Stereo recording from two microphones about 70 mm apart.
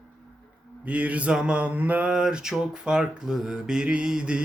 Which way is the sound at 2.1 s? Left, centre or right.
Centre.